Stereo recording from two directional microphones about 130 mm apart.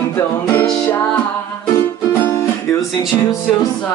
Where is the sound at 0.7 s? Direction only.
10° left (ahead or behind).